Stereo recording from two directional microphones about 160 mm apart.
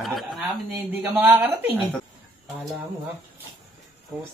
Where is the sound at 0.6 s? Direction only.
10° right (ahead or behind).